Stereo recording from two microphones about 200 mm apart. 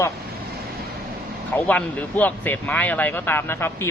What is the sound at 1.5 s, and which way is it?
A man's voice, 5° left (ahead or behind).